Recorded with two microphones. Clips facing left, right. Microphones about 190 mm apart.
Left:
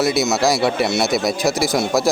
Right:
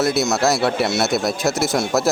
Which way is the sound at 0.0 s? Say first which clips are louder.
Left 1 dB; centre (ahead or behind).